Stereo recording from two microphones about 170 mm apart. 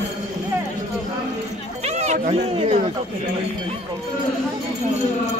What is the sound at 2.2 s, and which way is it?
Speech, 40° right (ahead or behind).